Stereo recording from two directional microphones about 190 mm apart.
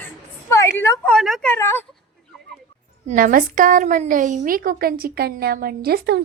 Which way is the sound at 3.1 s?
45° right (ahead or behind).